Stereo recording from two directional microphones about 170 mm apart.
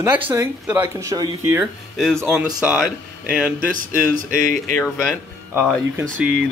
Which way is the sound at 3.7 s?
50° right (ahead or behind).